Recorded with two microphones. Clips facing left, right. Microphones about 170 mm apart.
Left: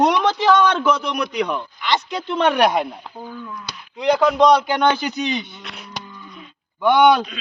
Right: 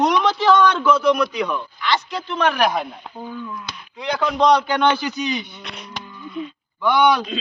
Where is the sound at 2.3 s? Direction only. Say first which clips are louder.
Left 3 dB; 25° left (ahead or behind).